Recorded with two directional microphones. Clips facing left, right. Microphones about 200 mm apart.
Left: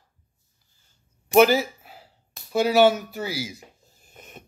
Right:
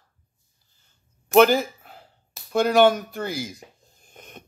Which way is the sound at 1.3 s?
5° left (ahead or behind).